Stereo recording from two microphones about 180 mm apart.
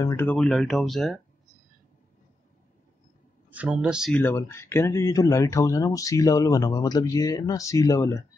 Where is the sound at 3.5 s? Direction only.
5° right (ahead or behind).